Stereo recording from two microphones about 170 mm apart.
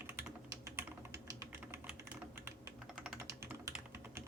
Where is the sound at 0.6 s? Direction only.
15° right (ahead or behind).